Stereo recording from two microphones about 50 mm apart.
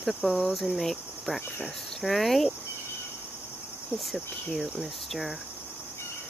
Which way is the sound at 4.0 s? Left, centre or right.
Centre.